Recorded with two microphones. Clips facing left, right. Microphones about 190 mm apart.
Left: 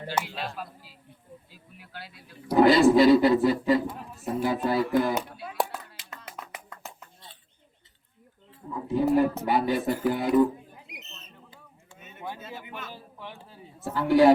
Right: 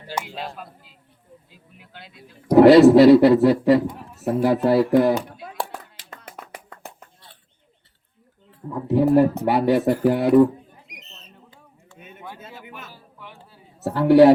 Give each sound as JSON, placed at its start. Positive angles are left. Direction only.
{"t": 0.3, "sound": "speech", "side_deg": -20}
{"t": 2.6, "sound": "speech", "side_deg": -70}
{"t": 8.9, "sound": "speech", "side_deg": -70}
{"t": 12.9, "sound": "a sound", "side_deg": 25}
{"t": 13.7, "sound": "a woman's voice", "side_deg": -70}